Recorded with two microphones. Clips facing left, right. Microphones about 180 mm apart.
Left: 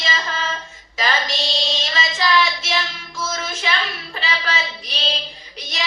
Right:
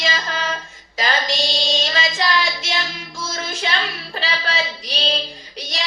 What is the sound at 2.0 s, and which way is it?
Child singing, 30° right (ahead or behind).